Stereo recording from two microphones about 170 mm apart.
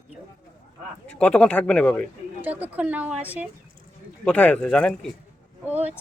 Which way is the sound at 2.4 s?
10° right (ahead or behind).